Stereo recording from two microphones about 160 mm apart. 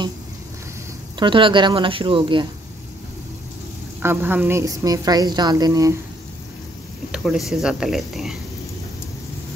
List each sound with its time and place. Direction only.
1.2 s speech: 30° right (ahead or behind)
4.0 s a woman's voice: 15° right (ahead or behind)
7.1 s speech: centre (ahead or behind)